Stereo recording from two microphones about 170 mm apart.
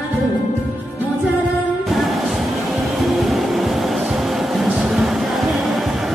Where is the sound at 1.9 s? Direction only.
Centre (ahead or behind).